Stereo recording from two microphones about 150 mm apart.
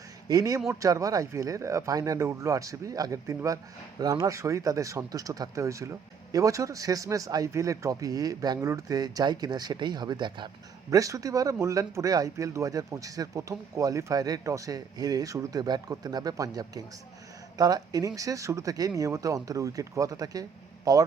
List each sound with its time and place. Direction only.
0.3 s speech: 25° right (ahead or behind)